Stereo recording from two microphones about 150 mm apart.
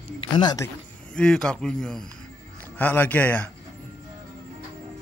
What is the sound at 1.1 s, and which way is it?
Speech, 5° left (ahead or behind).